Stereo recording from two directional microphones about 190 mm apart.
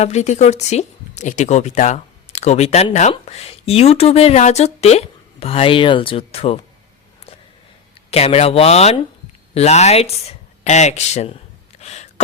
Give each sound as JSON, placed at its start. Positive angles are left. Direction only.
{"t": 0.0, "sound": "speech", "side_deg": 35}
{"t": 8.1, "sound": "speech", "side_deg": 35}
{"t": 11.8, "sound": "a sound", "side_deg": 35}